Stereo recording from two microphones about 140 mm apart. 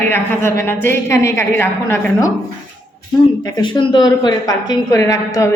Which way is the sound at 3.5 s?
30° left (ahead or behind).